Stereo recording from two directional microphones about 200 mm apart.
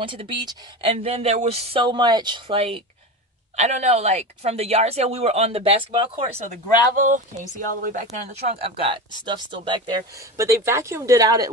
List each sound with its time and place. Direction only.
0.0 s speech: 25° right (ahead or behind)
7.0 s speech: 40° right (ahead or behind); by 11.5 s 15° right (ahead or behind)